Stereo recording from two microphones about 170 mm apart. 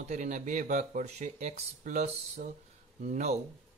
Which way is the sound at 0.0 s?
45° right (ahead or behind).